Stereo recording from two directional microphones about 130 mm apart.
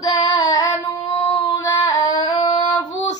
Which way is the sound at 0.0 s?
30° left (ahead or behind).